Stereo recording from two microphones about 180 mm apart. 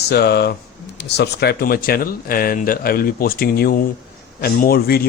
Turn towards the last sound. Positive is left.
turn(degrees=60)  # may be behind; listen again after turning